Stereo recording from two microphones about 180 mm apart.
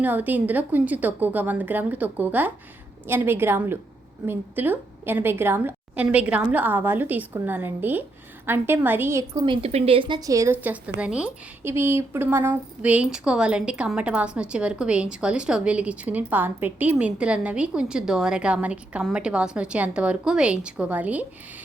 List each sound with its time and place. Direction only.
0.0 s a woman's voice: 10° right (ahead or behind)